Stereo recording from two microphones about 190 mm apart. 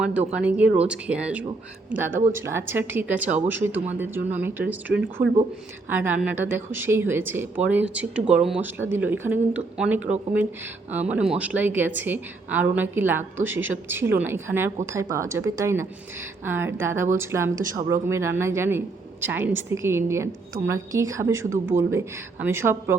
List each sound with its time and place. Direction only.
0.0 s a woman's voice: 5° right (ahead or behind)
5.2 s speech: 45° right (ahead or behind)
5.9 s a woman's voice: 10° right (ahead or behind)